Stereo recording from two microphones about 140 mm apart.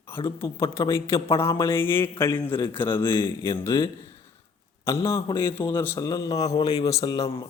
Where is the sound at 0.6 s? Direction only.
20° left (ahead or behind).